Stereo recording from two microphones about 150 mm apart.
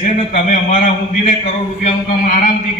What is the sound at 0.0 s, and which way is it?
Speech, 65° left (ahead or behind).